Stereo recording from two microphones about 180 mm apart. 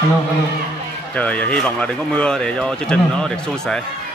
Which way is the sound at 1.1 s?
10° left (ahead or behind).